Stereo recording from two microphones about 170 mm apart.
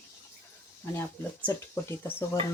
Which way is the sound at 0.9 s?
15° left (ahead or behind).